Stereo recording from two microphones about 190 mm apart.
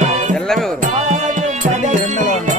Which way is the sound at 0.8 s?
40° right (ahead or behind).